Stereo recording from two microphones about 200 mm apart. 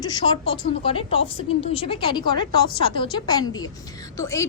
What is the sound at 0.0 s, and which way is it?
A woman's voice, 20° left (ahead or behind).